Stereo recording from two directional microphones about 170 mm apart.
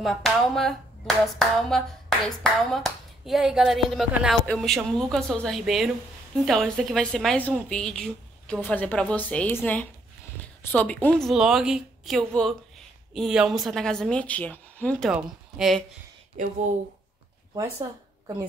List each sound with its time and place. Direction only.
0.0 s speech: centre (ahead or behind)
15.0 s speech: 5° right (ahead or behind)
16.4 s speech: 50° right (ahead or behind)
17.6 s speech: 20° right (ahead or behind)